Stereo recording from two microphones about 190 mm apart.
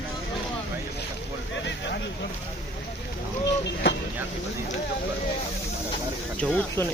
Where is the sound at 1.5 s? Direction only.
65° left (ahead or behind).